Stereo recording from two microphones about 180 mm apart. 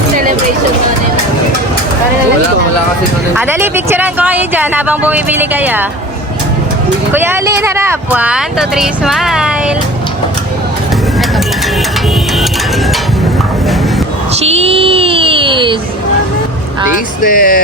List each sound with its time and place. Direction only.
3.3 s speech: 10° right (ahead or behind)
7.1 s speech: 10° right (ahead or behind)
14.4 s a sound: 35° right (ahead or behind)
17.2 s music: 50° left (ahead or behind)